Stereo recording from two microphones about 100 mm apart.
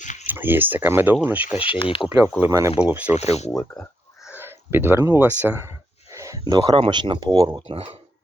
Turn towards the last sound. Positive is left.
turn(degrees=-85)